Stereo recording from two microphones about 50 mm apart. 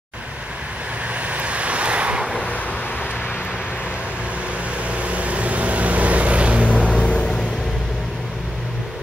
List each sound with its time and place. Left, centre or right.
1.1 s vehicle: right
4.8 s vehicle: right
6.7 s vehicle: left